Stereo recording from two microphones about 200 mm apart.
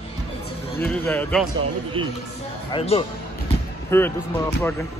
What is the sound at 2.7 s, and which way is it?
Speech, 25° left (ahead or behind).